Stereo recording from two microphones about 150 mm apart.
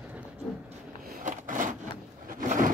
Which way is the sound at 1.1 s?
60° right (ahead or behind).